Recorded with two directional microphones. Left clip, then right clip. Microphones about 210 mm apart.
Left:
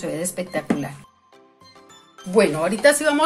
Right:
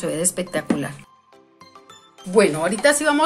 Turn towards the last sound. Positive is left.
turn(degrees=0)  # may be behind; listen again after turning